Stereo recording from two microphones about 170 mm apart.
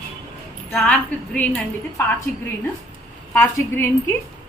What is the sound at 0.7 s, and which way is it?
A woman's voice, 5° left (ahead or behind).